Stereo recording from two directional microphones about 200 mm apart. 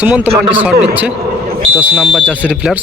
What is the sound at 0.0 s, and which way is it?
A man's voice, 5° right (ahead or behind).